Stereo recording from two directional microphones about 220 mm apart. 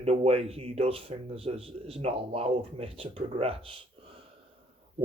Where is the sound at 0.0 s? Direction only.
25° right (ahead or behind).